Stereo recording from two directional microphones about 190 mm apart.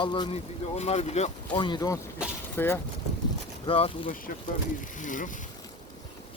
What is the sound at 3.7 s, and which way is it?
Speech, 30° left (ahead or behind).